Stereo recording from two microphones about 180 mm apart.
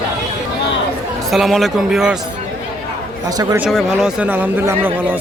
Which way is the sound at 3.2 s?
20° right (ahead or behind).